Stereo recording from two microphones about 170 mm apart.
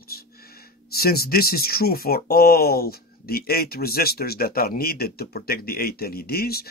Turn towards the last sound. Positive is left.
turn(degrees=65)  # may be behind; listen again after turning